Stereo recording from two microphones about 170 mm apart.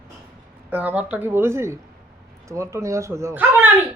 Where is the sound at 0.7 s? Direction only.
10° right (ahead or behind).